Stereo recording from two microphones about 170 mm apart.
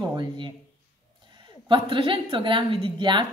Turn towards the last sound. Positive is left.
turn(degrees=-30)  # may be behind; listen again after turning